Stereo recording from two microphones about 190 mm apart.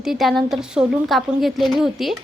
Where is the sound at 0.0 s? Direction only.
Centre (ahead or behind).